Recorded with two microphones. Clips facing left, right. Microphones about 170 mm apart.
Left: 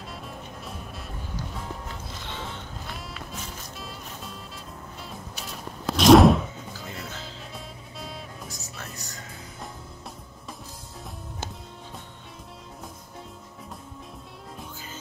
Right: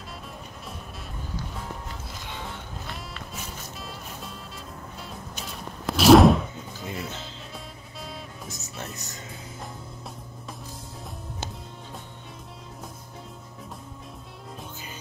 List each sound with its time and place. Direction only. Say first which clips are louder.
2.9 s music: left 1 dB; centre (ahead or behind)
5.4 s a sound: even; centre (ahead or behind)
6.8 s music: right 6 dB; centre (ahead or behind)
8.9 s music: right 1 dB; 20° right (ahead or behind)